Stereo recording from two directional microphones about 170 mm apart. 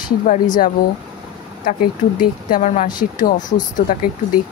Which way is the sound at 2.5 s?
50° left (ahead or behind).